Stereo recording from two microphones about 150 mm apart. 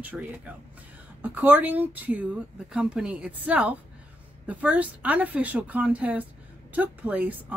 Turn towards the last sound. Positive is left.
turn(degrees=-10)  # may be behind; listen again after turning